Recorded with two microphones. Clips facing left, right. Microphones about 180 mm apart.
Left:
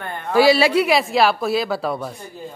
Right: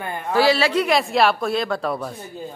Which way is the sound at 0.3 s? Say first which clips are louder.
Left 3 dB; 15° left (ahead or behind).